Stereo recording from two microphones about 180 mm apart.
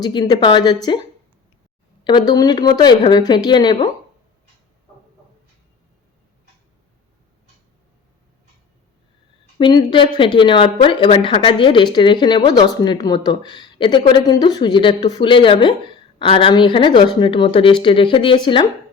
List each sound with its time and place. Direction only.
0.0 s speech: 25° left (ahead or behind)
2.0 s speech: 25° left (ahead or behind)
9.6 s speech: 25° left (ahead or behind)